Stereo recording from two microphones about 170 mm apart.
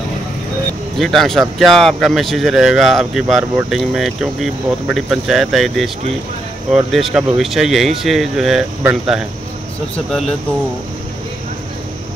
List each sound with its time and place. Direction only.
0.9 s speech: centre (ahead or behind)